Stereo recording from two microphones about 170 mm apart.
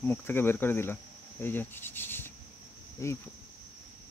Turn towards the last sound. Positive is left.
turn(degrees=15)  # may be behind; listen again after turning